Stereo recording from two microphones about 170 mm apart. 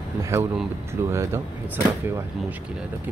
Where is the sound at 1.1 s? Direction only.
15° right (ahead or behind).